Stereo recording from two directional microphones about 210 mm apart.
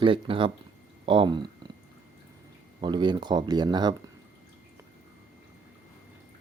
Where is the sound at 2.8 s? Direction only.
20° right (ahead or behind).